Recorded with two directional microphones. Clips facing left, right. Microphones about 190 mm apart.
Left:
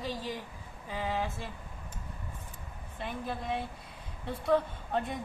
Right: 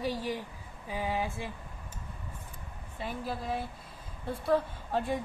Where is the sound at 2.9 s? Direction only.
5° right (ahead or behind).